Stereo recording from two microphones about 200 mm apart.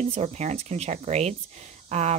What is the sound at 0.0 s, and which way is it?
Speech, 35° right (ahead or behind).